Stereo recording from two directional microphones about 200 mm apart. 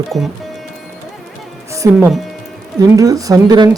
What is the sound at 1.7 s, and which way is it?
Speech, 15° right (ahead or behind).